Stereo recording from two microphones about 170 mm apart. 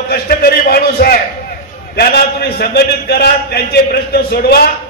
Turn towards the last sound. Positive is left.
turn(degrees=65)  # may be behind; listen again after turning